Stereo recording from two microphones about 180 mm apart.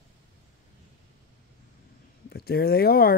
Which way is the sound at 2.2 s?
60° left (ahead or behind).